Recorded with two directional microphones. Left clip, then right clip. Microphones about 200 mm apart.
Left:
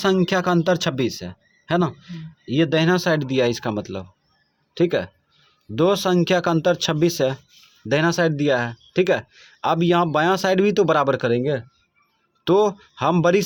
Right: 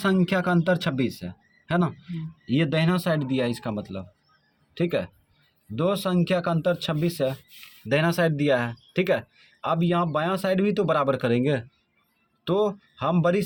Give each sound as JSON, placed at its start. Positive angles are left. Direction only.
{"t": 0.0, "sound": "speech", "side_deg": 25}
{"t": 7.9, "sound": "speech", "side_deg": 20}
{"t": 11.3, "sound": "speech", "side_deg": 10}
{"t": 12.5, "sound": "speech", "side_deg": 30}